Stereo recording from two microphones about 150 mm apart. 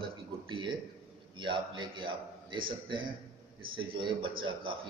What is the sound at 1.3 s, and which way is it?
Speech, 30° right (ahead or behind).